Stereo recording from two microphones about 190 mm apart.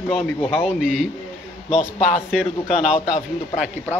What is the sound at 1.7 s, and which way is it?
A man's voice, 35° left (ahead or behind).